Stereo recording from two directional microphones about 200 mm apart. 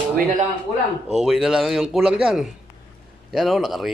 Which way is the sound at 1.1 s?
Centre (ahead or behind).